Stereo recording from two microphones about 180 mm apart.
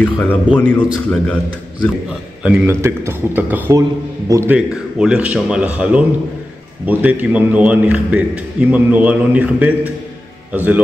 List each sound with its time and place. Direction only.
0.0 s a man's voice: 10° left (ahead or behind)
2.4 s a man's voice: 10° right (ahead or behind)
4.6 s a man's voice: 5° right (ahead or behind)